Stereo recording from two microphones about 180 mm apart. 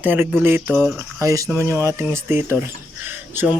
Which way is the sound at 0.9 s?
15° right (ahead or behind).